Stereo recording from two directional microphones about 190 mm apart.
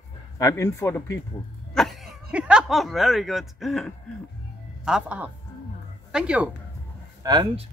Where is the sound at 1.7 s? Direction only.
Centre (ahead or behind).